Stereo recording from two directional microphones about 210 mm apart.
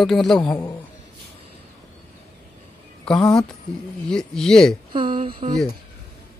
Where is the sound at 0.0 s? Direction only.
Centre (ahead or behind).